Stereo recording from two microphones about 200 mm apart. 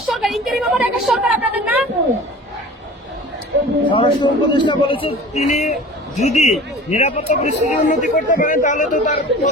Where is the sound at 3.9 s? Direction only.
25° left (ahead or behind).